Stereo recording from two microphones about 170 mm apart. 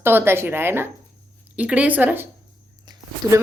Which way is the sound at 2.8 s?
25° right (ahead or behind).